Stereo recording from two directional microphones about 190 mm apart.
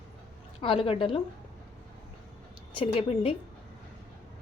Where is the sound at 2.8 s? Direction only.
30° left (ahead or behind).